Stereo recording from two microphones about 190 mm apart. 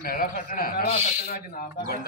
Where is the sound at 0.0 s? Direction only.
50° left (ahead or behind).